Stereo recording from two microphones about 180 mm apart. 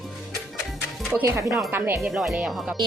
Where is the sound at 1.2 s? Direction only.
15° right (ahead or behind).